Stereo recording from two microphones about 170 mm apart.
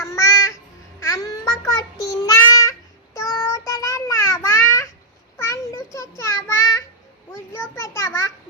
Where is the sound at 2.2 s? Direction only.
20° left (ahead or behind).